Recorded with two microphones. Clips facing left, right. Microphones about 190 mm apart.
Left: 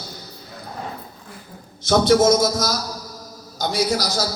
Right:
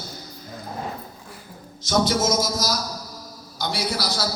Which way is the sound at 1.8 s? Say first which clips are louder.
Left 6 dB; 55° left (ahead or behind).